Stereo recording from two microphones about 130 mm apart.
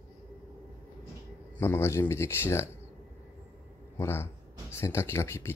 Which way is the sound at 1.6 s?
20° left (ahead or behind).